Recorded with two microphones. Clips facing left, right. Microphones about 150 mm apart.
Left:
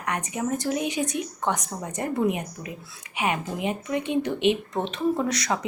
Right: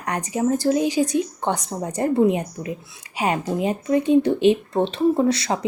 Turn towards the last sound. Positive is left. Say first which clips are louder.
# right 6 dB
turn(degrees=-30)  # may be behind; listen again after turning